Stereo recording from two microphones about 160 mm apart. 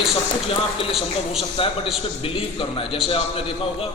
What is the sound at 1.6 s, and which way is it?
A man's voice, 35° left (ahead or behind).